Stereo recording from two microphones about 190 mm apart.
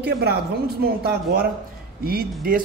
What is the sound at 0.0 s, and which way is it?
A woman's voice, 60° right (ahead or behind).